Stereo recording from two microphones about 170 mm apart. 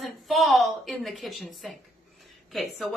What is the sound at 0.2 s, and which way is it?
A woman's voice, centre (ahead or behind).